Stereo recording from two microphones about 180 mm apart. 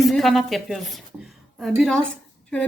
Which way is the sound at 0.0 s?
Centre (ahead or behind).